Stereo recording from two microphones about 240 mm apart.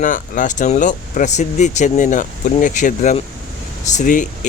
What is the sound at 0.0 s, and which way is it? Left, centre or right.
Speech, left.